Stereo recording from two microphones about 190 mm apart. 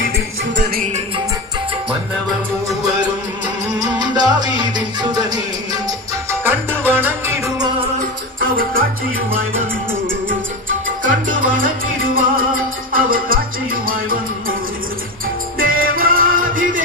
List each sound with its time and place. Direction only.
0.5 s music: 60° right (ahead or behind)
3.8 s music: 20° right (ahead or behind)
8.4 s music: 50° right (ahead or behind)
11.0 s salsa music: 45° right (ahead or behind)
12.0 s music: 50° right (ahead or behind)
15.5 s music: 50° right (ahead or behind)